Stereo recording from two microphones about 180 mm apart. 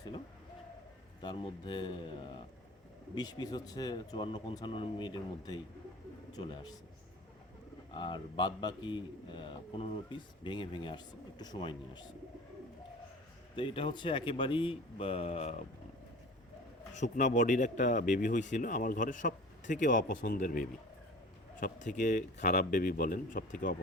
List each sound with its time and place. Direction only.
1.2 s a man's voice: 25° left (ahead or behind)
7.9 s a man's voice: 25° left (ahead or behind)
13.6 s a man's voice: 30° left (ahead or behind)
16.9 s speech: 40° left (ahead or behind)